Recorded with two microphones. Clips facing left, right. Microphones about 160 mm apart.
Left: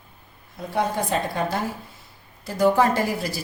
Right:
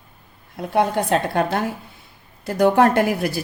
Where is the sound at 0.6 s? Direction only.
65° right (ahead or behind).